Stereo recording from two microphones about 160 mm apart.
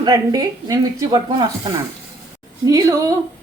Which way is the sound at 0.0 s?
25° right (ahead or behind).